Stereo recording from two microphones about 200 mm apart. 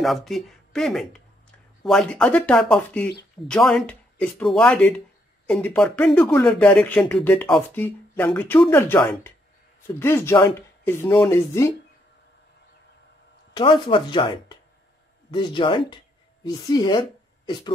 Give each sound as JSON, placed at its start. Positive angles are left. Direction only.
{"t": 0.0, "sound": "speech", "side_deg": 0}
{"t": 13.5, "sound": "a woman's voice", "side_deg": 25}